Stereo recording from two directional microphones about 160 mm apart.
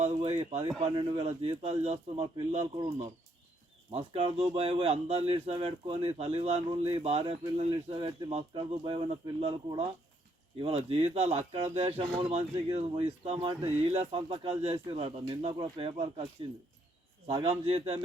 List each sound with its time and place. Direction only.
0.0 s speech: 40° right (ahead or behind)
3.9 s speech: 40° right (ahead or behind)
17.2 s speech: 35° right (ahead or behind)